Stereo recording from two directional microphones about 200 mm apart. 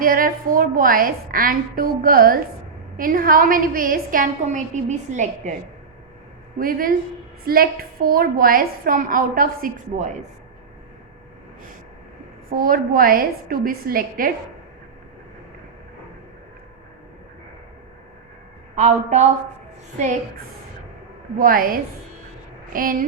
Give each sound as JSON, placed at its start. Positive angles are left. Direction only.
{"t": 0.0, "sound": "a woman's voice", "side_deg": -45}
{"t": 6.6, "sound": "a woman's voice", "side_deg": -45}
{"t": 12.5, "sound": "a woman's voice", "side_deg": -45}
{"t": 18.8, "sound": "a woman's voice", "side_deg": -35}
{"t": 21.3, "sound": "a woman's voice", "side_deg": -45}